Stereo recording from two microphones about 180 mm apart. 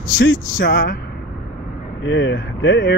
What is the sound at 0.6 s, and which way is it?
Speech, 70° left (ahead or behind).